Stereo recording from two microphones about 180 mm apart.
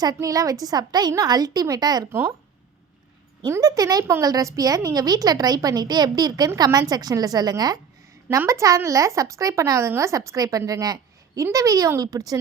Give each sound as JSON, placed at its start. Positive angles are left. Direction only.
{"t": 0.0, "sound": "a woman's voice", "side_deg": -20}
{"t": 3.4, "sound": "a woman's voice", "side_deg": -20}